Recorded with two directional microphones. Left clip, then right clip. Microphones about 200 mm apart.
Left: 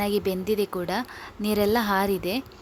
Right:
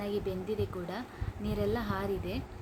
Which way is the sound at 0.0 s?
60° left (ahead or behind).